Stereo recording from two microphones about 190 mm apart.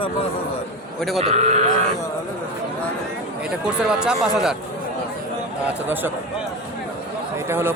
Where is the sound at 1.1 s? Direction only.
35° right (ahead or behind).